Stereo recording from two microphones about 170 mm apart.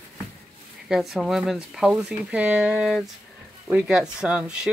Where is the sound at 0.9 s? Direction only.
Centre (ahead or behind).